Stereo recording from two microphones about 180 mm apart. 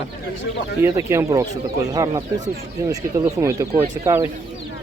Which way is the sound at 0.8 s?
15° right (ahead or behind).